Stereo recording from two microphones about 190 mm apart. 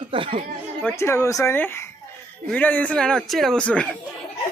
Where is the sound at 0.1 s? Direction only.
30° right (ahead or behind).